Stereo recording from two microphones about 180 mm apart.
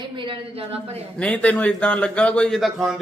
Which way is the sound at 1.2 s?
5° left (ahead or behind).